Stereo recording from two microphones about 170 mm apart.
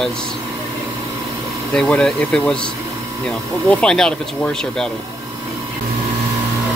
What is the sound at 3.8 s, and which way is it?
Speech, 5° left (ahead or behind).